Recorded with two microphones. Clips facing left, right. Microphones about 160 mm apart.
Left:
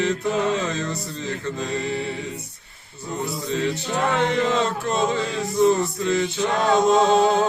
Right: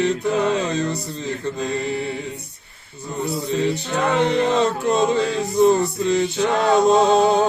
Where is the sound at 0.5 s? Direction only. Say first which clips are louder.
Right 4 dB; 15° right (ahead or behind).